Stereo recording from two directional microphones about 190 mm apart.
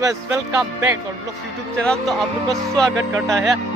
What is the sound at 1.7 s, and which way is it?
Speech, 5° left (ahead or behind).